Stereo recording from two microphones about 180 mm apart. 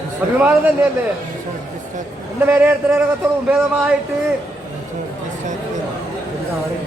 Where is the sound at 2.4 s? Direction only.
10° right (ahead or behind).